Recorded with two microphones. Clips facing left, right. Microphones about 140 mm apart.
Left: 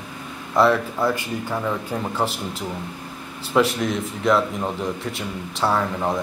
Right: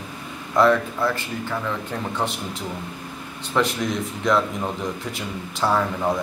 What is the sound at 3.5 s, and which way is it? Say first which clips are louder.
Speech: left 3 dB; centre (ahead or behind).